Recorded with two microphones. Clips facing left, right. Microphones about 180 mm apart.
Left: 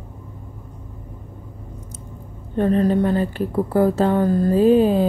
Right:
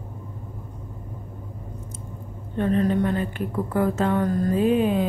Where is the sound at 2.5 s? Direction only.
35° left (ahead or behind).